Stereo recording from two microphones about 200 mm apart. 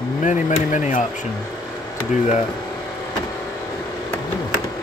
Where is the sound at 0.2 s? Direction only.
40° left (ahead or behind).